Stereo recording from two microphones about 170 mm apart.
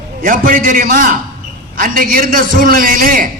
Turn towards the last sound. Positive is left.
turn(degrees=-55)  # may be behind; listen again after turning